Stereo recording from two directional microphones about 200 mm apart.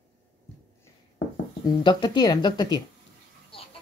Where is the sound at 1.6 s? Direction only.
20° left (ahead or behind).